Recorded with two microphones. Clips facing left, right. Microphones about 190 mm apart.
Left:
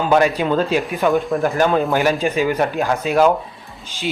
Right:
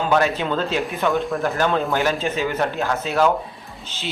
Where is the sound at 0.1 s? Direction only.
10° left (ahead or behind).